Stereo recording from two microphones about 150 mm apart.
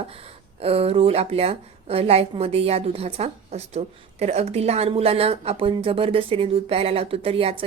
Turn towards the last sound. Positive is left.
turn(degrees=-40)  # may be behind; listen again after turning